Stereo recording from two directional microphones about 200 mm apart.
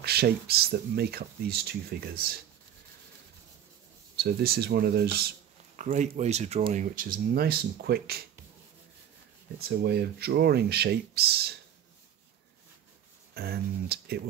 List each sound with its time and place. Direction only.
0.0 s speech: 50° right (ahead or behind)
4.2 s speech: 50° right (ahead or behind)
5.8 s speech: 35° right (ahead or behind)
9.6 s speech: 55° right (ahead or behind)
13.3 s speech: 50° right (ahead or behind)